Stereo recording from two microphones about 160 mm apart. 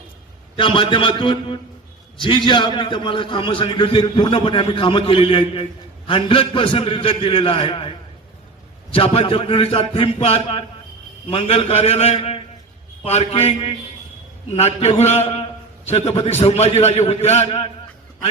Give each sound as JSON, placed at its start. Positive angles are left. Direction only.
{"t": 0.5, "sound": "a man's voice", "side_deg": 30}